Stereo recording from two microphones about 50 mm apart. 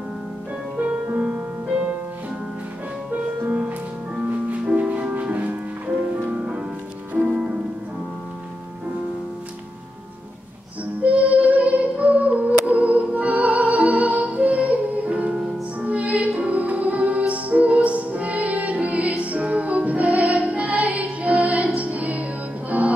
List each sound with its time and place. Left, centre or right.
1.1 s music: right
3.4 s music: right
11.0 s music: right